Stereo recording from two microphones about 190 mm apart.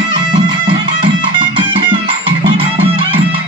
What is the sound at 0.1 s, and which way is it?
Music, 25° right (ahead or behind).